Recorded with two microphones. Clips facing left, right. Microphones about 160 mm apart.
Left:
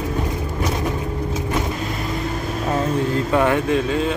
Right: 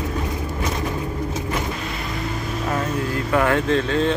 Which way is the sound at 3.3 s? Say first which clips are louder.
Even; 15° left (ahead or behind).